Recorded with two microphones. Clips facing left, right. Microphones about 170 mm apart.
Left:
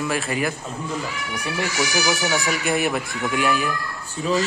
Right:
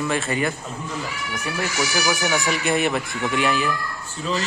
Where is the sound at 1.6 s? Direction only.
15° left (ahead or behind).